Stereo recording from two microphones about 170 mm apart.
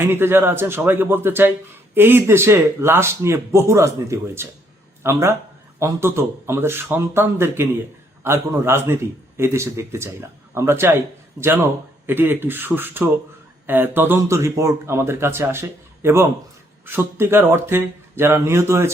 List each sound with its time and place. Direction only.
0.0 s a man's voice: 15° right (ahead or behind)